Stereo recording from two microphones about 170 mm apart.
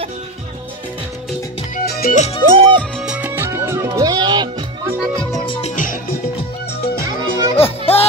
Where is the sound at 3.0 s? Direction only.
5° right (ahead or behind); by 4.5 s 25° right (ahead or behind).